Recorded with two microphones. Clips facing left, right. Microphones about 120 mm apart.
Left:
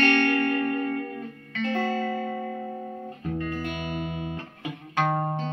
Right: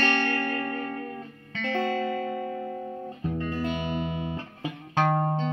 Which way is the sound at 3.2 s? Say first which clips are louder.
Right 1 dB; 25° right (ahead or behind).